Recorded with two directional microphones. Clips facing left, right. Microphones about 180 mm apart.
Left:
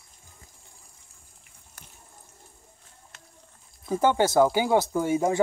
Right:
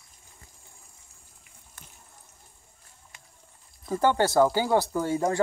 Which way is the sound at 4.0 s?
20° left (ahead or behind).